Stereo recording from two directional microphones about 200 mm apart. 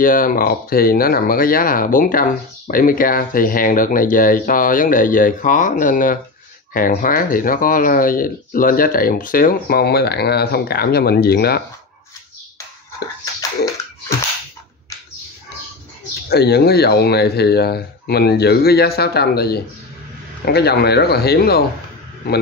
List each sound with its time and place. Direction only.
0.0 s speech: 45° left (ahead or behind)
16.3 s speech: 50° left (ahead or behind)